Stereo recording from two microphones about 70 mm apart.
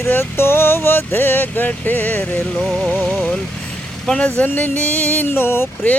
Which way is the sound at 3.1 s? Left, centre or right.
Centre.